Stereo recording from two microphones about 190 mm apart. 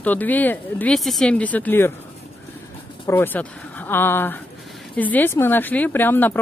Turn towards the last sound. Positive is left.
turn(degrees=10)  # may be behind; listen again after turning